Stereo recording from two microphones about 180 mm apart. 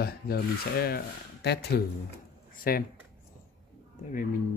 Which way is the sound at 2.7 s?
55° left (ahead or behind).